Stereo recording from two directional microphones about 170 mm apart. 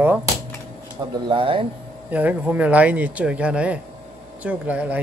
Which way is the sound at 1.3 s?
30° right (ahead or behind).